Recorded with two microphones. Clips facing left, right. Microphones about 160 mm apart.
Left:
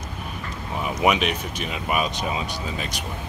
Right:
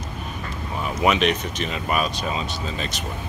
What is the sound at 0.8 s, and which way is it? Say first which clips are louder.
Speech: right 1 dB; 10° left (ahead or behind).